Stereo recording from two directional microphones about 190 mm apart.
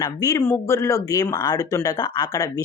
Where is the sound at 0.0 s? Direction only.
15° left (ahead or behind).